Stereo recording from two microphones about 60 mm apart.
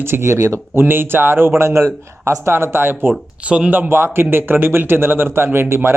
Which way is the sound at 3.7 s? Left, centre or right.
Right.